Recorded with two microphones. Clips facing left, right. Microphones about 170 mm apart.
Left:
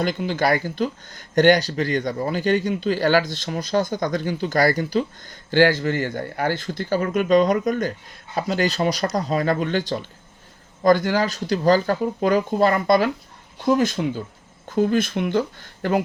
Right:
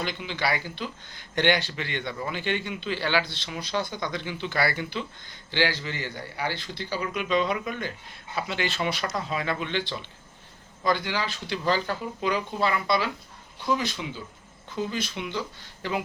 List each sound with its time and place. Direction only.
0.0 s speech: 45° left (ahead or behind)